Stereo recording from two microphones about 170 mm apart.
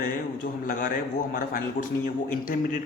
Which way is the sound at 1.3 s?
55° left (ahead or behind).